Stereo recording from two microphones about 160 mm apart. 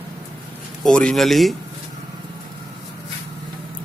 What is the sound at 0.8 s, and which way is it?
Speech, 5° left (ahead or behind).